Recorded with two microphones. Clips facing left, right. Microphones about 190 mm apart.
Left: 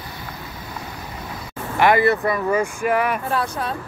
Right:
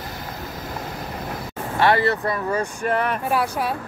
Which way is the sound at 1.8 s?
15° left (ahead or behind).